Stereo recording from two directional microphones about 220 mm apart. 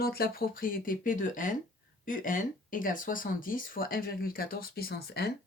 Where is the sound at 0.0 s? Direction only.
45° left (ahead or behind).